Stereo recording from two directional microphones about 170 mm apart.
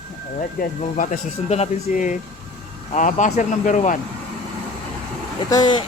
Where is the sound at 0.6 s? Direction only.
50° left (ahead or behind).